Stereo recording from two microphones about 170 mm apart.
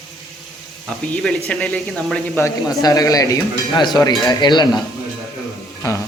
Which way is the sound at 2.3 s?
20° left (ahead or behind).